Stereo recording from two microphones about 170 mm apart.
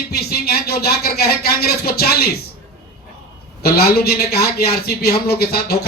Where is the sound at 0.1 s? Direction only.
65° left (ahead or behind).